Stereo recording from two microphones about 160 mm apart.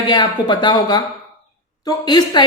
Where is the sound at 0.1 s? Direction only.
25° left (ahead or behind).